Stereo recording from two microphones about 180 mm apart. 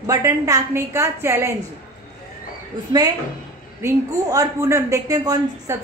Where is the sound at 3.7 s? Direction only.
15° right (ahead or behind).